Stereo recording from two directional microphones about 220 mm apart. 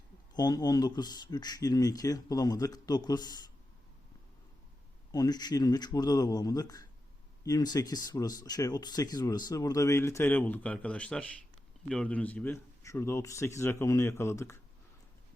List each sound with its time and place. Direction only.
0.3 s speech: 20° left (ahead or behind)
5.1 s speech: 15° left (ahead or behind)